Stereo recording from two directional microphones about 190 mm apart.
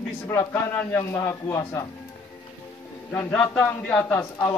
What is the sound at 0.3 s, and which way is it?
A man's voice, 10° left (ahead or behind).